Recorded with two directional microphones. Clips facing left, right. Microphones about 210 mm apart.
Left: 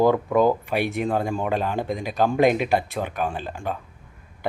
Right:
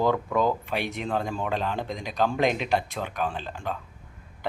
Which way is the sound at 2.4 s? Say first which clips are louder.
Left 6 dB; 50° left (ahead or behind).